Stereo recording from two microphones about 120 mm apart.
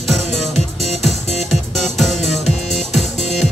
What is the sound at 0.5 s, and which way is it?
Music, 65° left (ahead or behind).